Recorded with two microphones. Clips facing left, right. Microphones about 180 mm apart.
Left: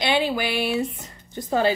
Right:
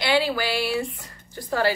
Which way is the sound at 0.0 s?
20° left (ahead or behind).